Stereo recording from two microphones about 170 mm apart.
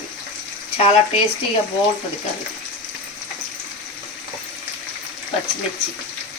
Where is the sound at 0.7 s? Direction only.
35° left (ahead or behind).